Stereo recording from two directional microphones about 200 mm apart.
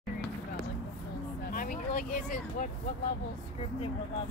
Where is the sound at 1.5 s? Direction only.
45° left (ahead or behind).